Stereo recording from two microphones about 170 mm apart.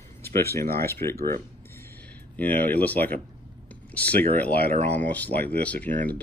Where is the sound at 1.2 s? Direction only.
65° right (ahead or behind).